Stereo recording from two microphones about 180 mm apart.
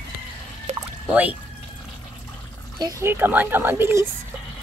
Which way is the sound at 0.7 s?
35° right (ahead or behind).